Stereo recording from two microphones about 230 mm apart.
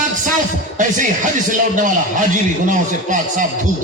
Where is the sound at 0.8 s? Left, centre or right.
Right.